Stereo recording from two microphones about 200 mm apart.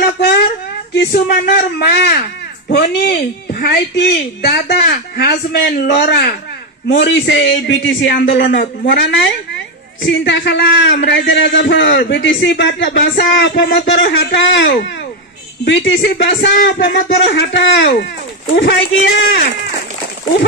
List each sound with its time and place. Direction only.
0.9 s a man's voice: 50° left (ahead or behind)
8.3 s speech: 50° left (ahead or behind)
8.8 s a man's voice: 65° left (ahead or behind); by 16.7 s 45° left (ahead or behind)
16.8 s a man's voice: 60° left (ahead or behind)